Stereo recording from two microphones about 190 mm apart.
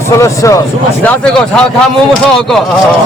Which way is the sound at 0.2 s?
15° left (ahead or behind).